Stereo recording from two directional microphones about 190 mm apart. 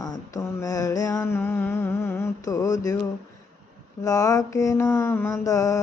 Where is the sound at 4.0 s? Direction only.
20° left (ahead or behind).